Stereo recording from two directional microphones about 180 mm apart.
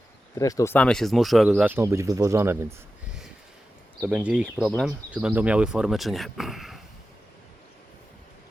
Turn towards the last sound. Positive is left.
turn(degrees=0)  # may be behind; listen again after turning